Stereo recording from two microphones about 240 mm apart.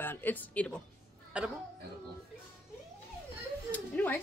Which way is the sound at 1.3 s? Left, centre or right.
Centre.